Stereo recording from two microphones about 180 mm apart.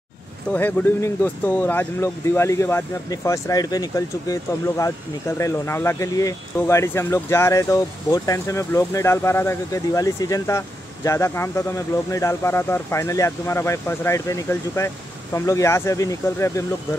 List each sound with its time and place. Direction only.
0.5 s speech: 10° left (ahead or behind)